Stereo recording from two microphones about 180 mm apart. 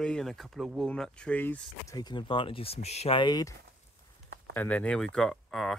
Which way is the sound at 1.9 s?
25° left (ahead or behind).